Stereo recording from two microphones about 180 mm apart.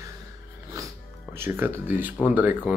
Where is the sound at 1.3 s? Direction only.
10° right (ahead or behind).